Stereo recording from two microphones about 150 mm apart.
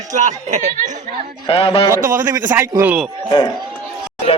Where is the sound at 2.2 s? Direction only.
20° right (ahead or behind).